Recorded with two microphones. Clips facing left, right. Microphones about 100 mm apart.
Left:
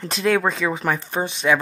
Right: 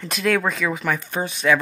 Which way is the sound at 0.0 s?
30° left (ahead or behind).